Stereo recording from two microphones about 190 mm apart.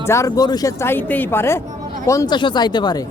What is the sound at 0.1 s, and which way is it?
Speech, 15° left (ahead or behind).